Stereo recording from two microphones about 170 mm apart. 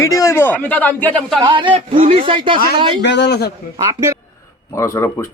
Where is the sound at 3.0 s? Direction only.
85° left.